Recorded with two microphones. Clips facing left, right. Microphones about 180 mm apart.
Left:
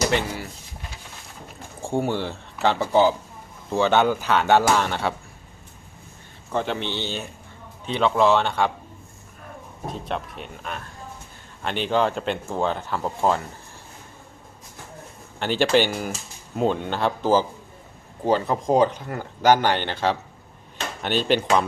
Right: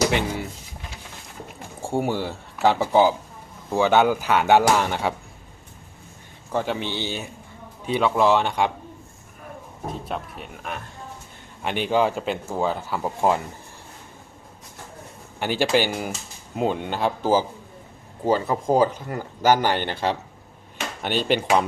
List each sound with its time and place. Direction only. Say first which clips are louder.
0.1 s speech: even; 15° right (ahead or behind)
1.8 s speech: even; 10° right (ahead or behind)
6.5 s speech: even; 10° right (ahead or behind)
9.8 s speech: left 1 dB; centre (ahead or behind)
15.4 s speech: left 1 dB; 10° right (ahead or behind)